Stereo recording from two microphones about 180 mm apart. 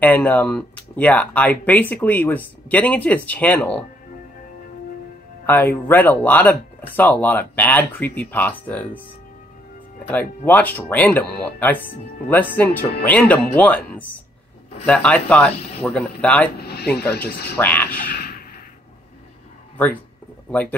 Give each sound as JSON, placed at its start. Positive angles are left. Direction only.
{"t": 0.0, "sound": "speech", "side_deg": 10}
{"t": 5.5, "sound": "speech", "side_deg": 10}
{"t": 10.0, "sound": "speech", "side_deg": 10}
{"t": 16.5, "sound": "speech", "side_deg": 65}
{"t": 17.6, "sound": "speech", "side_deg": 10}
{"t": 17.9, "sound": "a sound", "side_deg": 55}